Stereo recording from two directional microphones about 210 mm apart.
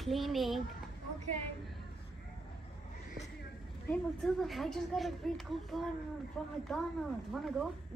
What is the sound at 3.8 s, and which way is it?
A woman's voice, 5° left (ahead or behind).